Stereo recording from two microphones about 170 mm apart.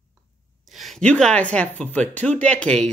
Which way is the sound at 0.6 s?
Centre (ahead or behind).